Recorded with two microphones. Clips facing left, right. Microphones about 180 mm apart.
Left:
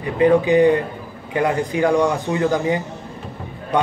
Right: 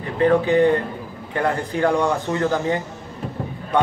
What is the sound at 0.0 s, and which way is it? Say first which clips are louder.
A man's voice: left 2 dB; 15° left (ahead or behind).